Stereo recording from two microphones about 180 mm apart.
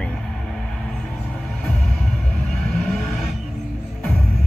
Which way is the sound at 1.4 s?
Centre (ahead or behind).